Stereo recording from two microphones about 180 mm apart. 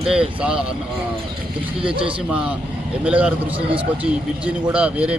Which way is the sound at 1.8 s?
30° right (ahead or behind).